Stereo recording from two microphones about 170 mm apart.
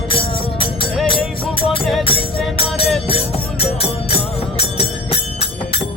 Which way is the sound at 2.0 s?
30° left (ahead or behind).